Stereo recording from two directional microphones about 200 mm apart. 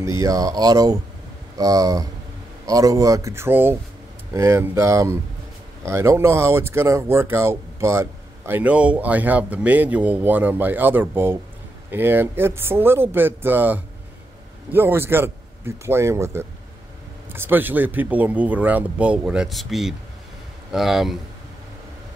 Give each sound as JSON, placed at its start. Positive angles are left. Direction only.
{"t": 0.0, "sound": "speech", "side_deg": -15}